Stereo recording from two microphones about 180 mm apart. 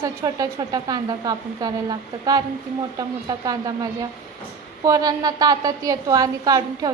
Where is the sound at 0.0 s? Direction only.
20° right (ahead or behind).